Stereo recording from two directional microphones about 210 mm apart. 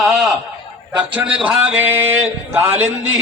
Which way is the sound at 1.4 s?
5° right (ahead or behind).